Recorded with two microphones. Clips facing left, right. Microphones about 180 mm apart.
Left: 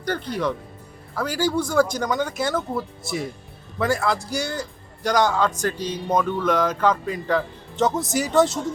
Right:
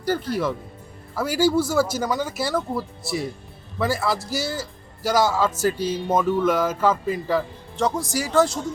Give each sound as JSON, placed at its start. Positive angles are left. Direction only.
{"t": 0.0, "sound": "speech", "side_deg": -5}
{"t": 8.1, "sound": "speech", "side_deg": 20}
{"t": 8.4, "sound": "speech", "side_deg": 0}